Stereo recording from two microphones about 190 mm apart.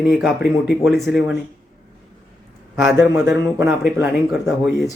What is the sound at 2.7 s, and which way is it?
Speech, centre (ahead or behind).